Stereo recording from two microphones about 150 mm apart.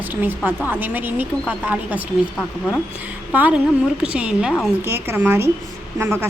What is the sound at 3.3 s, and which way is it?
A woman's voice, 10° right (ahead or behind).